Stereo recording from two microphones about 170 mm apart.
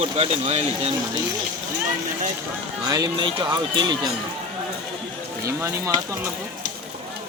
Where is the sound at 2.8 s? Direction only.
25° right (ahead or behind).